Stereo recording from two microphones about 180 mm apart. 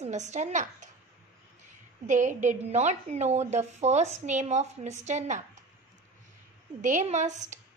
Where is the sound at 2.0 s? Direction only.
45° right (ahead or behind).